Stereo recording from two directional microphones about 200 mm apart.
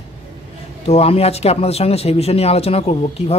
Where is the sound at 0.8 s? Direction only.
30° left (ahead or behind).